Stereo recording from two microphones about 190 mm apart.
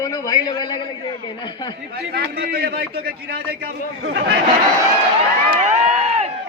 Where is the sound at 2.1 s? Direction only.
55° right (ahead or behind).